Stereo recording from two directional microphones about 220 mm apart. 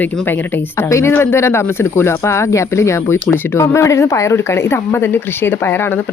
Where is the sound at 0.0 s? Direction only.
10° left (ahead or behind).